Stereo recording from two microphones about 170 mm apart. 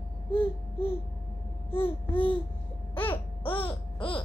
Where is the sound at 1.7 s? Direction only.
30° left (ahead or behind).